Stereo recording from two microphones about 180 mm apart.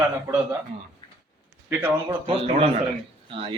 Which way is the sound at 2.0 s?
30° right (ahead or behind).